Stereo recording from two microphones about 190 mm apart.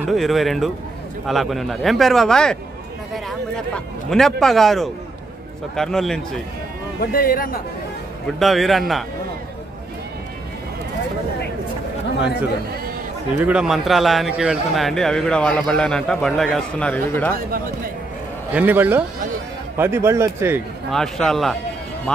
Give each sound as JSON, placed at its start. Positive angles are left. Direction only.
{"t": 0.1, "sound": "a man's voice", "side_deg": 0}
{"t": 7.0, "sound": "speech", "side_deg": 50}
{"t": 8.4, "sound": "a man's voice", "side_deg": 0}
{"t": 13.4, "sound": "a man's voice", "side_deg": -5}
{"t": 18.5, "sound": "speech", "side_deg": -10}
{"t": 20.9, "sound": "a man's voice", "side_deg": 0}